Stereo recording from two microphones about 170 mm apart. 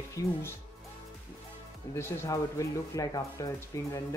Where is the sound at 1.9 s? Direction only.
15° left (ahead or behind).